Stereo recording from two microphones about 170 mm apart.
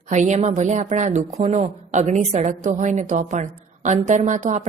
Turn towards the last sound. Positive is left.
turn(degrees=-45)  # may be behind; listen again after turning